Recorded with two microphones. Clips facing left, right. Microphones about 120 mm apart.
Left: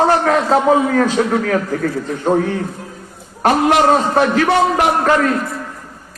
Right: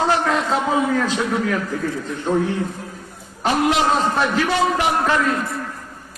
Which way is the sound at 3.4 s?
55° left (ahead or behind).